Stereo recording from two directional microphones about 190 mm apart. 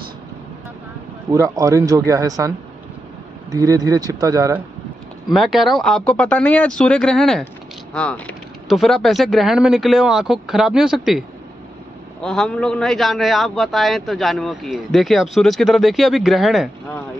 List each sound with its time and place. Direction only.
1.3 s speech: 15° right (ahead or behind)
3.5 s speech: 20° right (ahead or behind)
5.3 s a man's voice: centre (ahead or behind)